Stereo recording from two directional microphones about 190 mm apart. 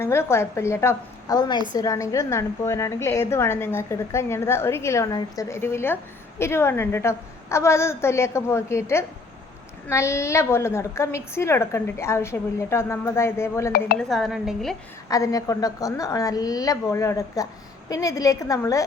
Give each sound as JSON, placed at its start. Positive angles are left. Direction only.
{"t": 0.0, "sound": "a woman's voice", "side_deg": 15}
{"t": 14.0, "sound": "speech", "side_deg": 0}
{"t": 15.1, "sound": "a woman's voice", "side_deg": 20}